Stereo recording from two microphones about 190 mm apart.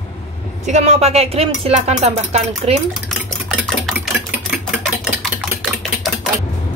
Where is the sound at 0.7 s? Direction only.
35° right (ahead or behind).